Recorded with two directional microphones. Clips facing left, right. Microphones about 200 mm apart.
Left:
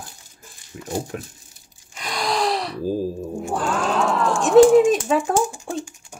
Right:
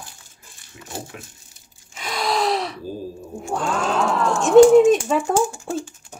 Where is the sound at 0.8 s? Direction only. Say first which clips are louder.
Left 7 dB; 45° left (ahead or behind).